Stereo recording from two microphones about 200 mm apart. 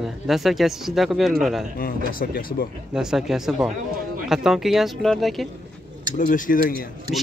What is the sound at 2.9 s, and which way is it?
Speech, 5° right (ahead or behind).